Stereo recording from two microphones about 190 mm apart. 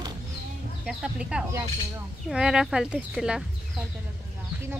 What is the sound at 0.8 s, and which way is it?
Speech, 5° right (ahead or behind).